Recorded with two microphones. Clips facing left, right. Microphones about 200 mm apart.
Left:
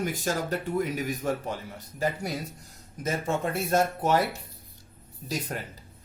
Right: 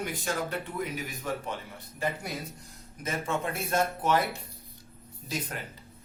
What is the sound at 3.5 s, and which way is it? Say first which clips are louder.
Speech: left 4 dB; 40° left (ahead or behind).